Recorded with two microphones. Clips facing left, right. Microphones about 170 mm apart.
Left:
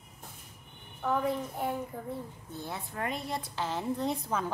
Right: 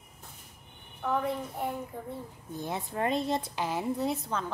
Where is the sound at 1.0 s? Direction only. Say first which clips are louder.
Even; centre (ahead or behind).